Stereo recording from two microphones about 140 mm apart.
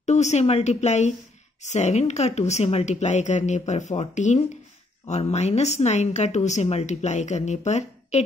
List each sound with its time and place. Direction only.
0.0 s a woman's voice: 55° left (ahead or behind)